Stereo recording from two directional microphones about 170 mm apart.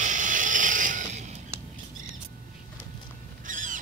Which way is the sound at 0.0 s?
45° right (ahead or behind).